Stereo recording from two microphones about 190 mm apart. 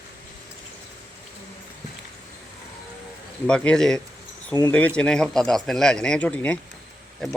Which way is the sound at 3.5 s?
5° left (ahead or behind).